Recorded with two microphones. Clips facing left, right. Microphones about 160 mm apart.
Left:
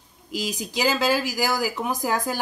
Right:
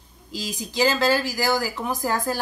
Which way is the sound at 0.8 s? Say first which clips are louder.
Right 1 dB; 10° left (ahead or behind).